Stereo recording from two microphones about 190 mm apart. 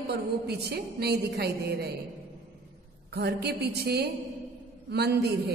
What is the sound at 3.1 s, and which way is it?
A woman's voice, 55° right (ahead or behind).